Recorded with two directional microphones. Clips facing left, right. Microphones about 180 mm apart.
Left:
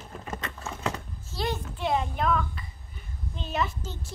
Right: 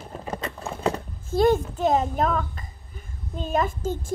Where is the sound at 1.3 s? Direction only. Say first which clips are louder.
Right 12 dB; 50° right (ahead or behind).